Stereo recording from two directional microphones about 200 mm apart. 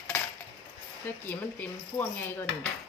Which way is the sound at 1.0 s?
10° left (ahead or behind).